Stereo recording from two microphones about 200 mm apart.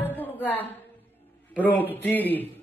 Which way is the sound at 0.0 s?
10° left (ahead or behind).